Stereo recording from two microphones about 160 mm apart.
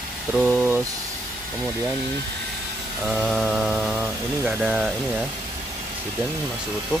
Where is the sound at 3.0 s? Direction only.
Centre (ahead or behind).